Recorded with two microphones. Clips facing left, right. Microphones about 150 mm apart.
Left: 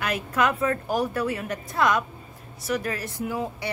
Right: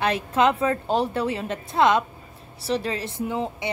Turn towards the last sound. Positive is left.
turn(degrees=-20)  # may be behind; listen again after turning